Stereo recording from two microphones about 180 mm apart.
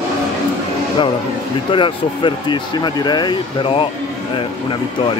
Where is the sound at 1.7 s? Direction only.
25° left (ahead or behind).